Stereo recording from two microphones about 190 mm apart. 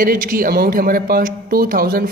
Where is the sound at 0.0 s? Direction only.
50° right (ahead or behind).